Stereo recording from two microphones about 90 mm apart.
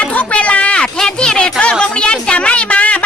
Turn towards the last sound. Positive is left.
turn(degrees=15)  # may be behind; listen again after turning